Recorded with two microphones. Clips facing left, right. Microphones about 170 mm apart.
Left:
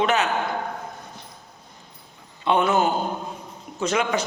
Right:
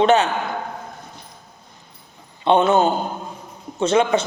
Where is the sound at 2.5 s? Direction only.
25° right (ahead or behind).